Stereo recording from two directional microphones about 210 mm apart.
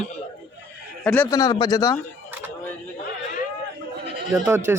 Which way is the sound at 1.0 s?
5° left (ahead or behind).